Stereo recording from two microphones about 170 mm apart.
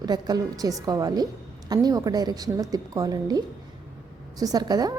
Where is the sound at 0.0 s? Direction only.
25° right (ahead or behind).